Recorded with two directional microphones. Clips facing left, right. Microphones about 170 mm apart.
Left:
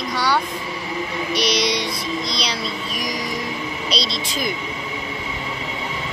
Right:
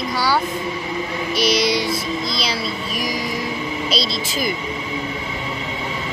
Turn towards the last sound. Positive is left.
turn(degrees=0)  # may be behind; listen again after turning